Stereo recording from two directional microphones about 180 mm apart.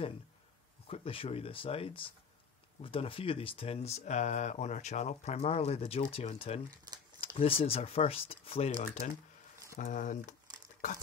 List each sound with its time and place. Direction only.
0.8 s speech: 35° left (ahead or behind)